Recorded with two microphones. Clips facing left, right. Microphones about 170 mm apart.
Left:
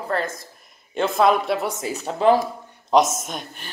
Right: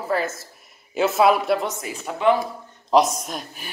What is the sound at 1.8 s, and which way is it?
Speech, 35° left (ahead or behind).